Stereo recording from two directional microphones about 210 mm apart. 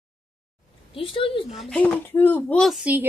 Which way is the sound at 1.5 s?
Centre (ahead or behind).